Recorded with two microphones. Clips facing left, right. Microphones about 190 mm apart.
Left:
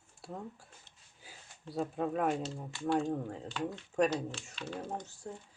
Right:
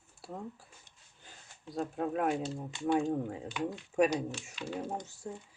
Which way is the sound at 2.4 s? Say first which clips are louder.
Right 2 dB; 15° right (ahead or behind).